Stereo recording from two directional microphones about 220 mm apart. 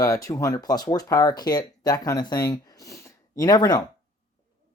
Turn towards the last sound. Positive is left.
turn(degrees=15)  # may be behind; listen again after turning